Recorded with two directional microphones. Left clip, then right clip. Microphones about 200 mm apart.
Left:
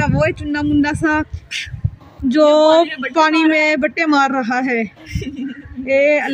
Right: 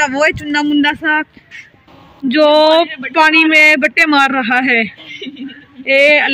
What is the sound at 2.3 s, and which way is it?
Mantra, 5° left (ahead or behind).